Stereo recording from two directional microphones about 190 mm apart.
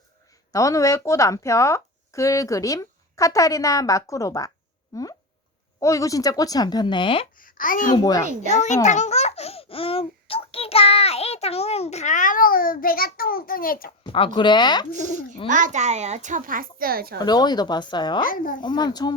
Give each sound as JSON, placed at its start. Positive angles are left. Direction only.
{"t": 0.5, "sound": "speech", "side_deg": 15}
{"t": 5.8, "sound": "a woman's voice", "side_deg": 15}
{"t": 7.3, "sound": "a child's voice", "side_deg": 45}
{"t": 7.9, "sound": "a woman's voice", "side_deg": 20}
{"t": 8.4, "sound": "a child's voice", "side_deg": 40}
{"t": 14.0, "sound": "a woman's voice", "side_deg": 25}
{"t": 15.4, "sound": "a child's voice", "side_deg": -40}
{"t": 17.2, "sound": "a woman's voice", "side_deg": 20}
{"t": 18.3, "sound": "a child's voice", "side_deg": 45}
{"t": 18.6, "sound": "a woman's voice", "side_deg": 20}